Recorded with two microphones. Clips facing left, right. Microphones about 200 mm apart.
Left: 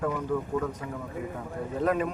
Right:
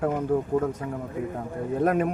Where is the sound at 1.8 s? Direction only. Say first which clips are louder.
Right 3 dB; 55° right (ahead or behind).